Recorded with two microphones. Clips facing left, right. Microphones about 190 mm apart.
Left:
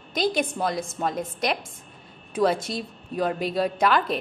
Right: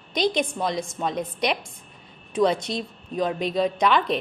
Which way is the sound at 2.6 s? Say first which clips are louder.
Right 2 dB; 5° left (ahead or behind).